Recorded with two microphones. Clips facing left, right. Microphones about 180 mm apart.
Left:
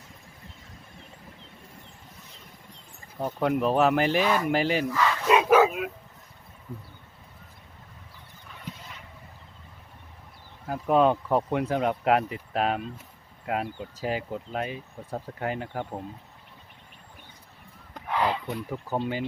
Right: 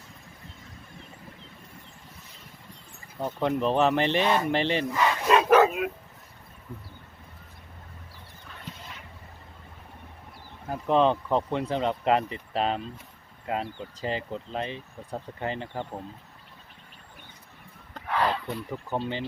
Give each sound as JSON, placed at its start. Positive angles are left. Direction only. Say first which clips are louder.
{"t": 3.2, "sound": "speech", "louder": "left 1 dB", "side_deg": 10}
{"t": 4.9, "sound": "speech", "louder": "even", "side_deg": -20}
{"t": 5.3, "sound": "bow-wow", "louder": "even", "side_deg": 10}
{"t": 10.7, "sound": "speech", "louder": "left 1 dB", "side_deg": 5}
{"t": 17.9, "sound": "a sound", "louder": "even", "side_deg": 15}